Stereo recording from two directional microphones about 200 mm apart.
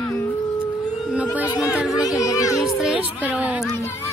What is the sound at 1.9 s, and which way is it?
Speech, 15° left (ahead or behind).